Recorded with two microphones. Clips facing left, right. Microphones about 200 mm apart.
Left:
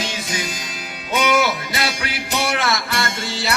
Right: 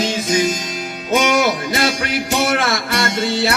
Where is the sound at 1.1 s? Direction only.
45° right (ahead or behind).